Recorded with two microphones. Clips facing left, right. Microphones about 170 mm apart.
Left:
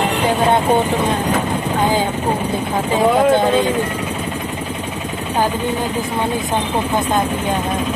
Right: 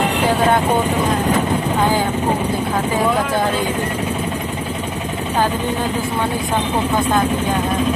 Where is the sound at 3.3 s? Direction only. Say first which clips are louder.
Left 6 dB; 25° left (ahead or behind).